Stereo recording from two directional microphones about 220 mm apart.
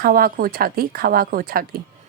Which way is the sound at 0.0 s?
40° right (ahead or behind).